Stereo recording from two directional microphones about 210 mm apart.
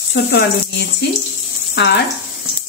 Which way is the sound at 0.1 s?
50° left (ahead or behind).